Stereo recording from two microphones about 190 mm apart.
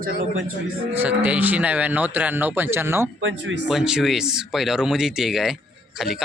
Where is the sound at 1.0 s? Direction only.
5° right (ahead or behind).